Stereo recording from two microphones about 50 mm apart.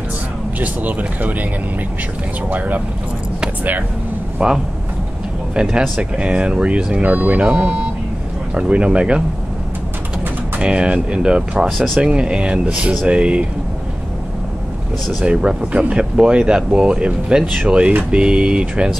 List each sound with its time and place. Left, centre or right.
0.6 s speech: right
4.4 s speech: centre
10.6 s speech: right
15.2 s speech: centre